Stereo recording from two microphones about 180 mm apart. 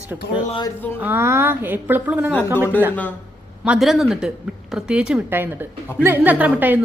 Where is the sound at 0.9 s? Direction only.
10° right (ahead or behind).